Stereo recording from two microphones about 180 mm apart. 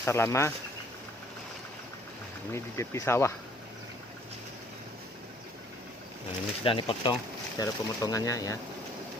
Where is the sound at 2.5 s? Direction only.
15° left (ahead or behind).